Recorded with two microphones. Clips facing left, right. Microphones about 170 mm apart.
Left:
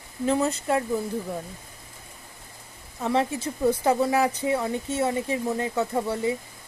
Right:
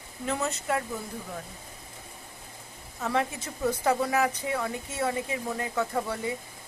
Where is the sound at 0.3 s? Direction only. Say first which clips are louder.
Left 6 dB; 35° left (ahead or behind).